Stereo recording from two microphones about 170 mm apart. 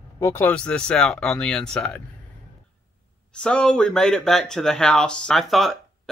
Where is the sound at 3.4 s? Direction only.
5° left (ahead or behind).